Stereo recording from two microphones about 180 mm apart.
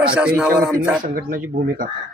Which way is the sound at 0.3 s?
5° right (ahead or behind).